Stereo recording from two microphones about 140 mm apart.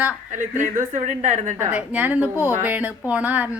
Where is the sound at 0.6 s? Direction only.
65° right (ahead or behind).